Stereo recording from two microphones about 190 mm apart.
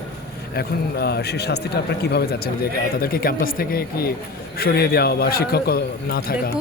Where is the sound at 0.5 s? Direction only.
55° left (ahead or behind).